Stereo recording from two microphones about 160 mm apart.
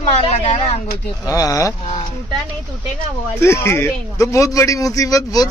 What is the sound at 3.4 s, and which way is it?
Speech, 15° left (ahead or behind).